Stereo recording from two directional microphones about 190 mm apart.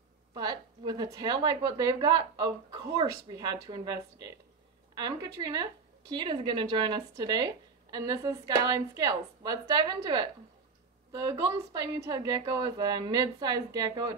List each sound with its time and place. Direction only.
0.3 s speech: 20° right (ahead or behind)